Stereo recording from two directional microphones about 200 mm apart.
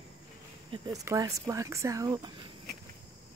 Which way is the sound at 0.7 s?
20° right (ahead or behind).